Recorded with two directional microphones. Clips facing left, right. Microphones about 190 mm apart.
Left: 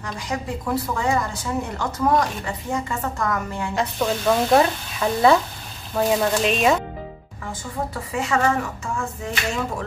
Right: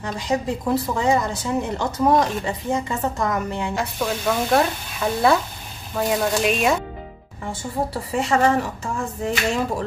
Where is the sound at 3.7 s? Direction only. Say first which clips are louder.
Left 2 dB; 5° right (ahead or behind).